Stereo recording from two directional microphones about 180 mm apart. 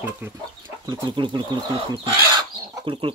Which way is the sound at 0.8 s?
25° right (ahead or behind).